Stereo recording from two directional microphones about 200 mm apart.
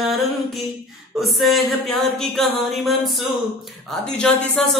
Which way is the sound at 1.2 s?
Centre (ahead or behind).